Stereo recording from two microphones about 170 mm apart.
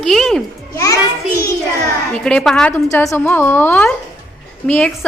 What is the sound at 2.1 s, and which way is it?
Speech, 5° left (ahead or behind).